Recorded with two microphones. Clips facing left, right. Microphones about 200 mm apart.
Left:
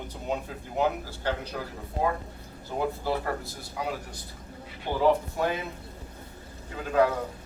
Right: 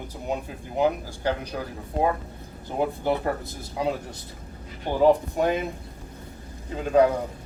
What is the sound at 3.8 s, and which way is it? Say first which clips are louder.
Speech: right 7 dB; 25° right (ahead or behind).